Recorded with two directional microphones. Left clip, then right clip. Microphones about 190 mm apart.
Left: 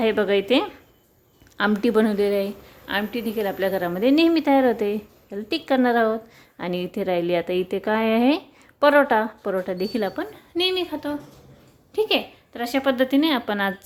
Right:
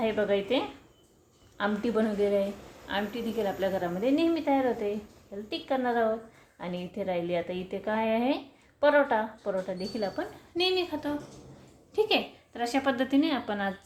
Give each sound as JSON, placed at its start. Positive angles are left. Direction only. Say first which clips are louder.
{"t": 0.0, "sound": "a woman's voice", "louder": "left 7 dB", "side_deg": 60}
{"t": 10.2, "sound": "a woman's voice", "louder": "left 5 dB", "side_deg": 30}